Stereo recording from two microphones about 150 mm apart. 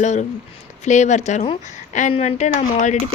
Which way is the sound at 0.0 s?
50° left (ahead or behind).